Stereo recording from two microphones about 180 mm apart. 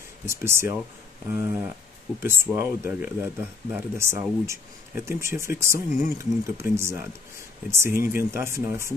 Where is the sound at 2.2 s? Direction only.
15° right (ahead or behind).